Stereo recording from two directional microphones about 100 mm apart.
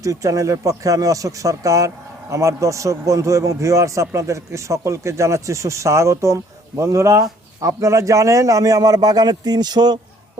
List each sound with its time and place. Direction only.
0.0 s a man's voice: 35° right (ahead or behind)